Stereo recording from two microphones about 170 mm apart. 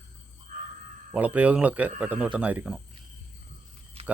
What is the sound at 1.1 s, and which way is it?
Speech, 10° right (ahead or behind).